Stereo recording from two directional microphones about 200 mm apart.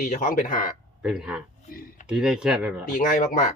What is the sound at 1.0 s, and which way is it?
A man's voice, 5° right (ahead or behind).